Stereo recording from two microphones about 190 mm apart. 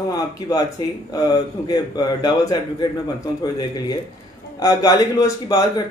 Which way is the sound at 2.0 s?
20° left (ahead or behind).